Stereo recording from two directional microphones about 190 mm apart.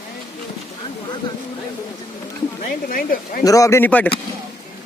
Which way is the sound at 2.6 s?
45° left (ahead or behind).